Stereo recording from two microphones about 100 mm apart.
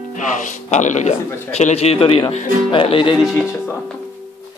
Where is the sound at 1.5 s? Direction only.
90° left; by 3.1 s 60° left (ahead or behind).